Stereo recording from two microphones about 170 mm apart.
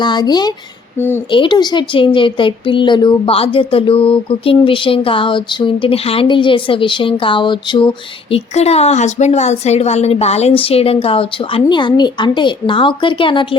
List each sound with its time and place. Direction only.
0.0 s speech: 25° left (ahead or behind)
0.9 s speech: 10° left (ahead or behind)
1.3 s a woman's voice: 25° left (ahead or behind)